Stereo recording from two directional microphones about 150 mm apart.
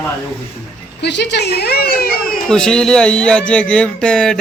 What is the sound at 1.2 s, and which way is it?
A woman's voice, 90° left.